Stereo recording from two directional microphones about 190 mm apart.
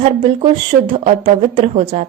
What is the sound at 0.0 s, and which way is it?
A woman's voice, 30° right (ahead or behind).